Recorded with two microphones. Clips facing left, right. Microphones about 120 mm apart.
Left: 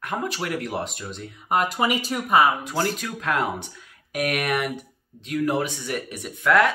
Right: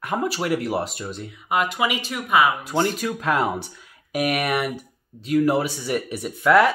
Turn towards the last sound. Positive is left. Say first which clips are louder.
# right 3 dB
turn(degrees=-5)  # may be behind; listen again after turning